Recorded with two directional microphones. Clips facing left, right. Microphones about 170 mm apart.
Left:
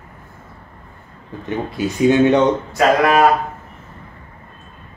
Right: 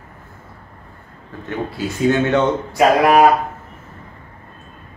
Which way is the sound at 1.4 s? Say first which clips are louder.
Left 2 dB; 15° left (ahead or behind).